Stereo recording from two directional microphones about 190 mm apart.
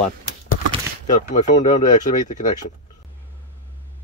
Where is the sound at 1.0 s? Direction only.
40° left (ahead or behind).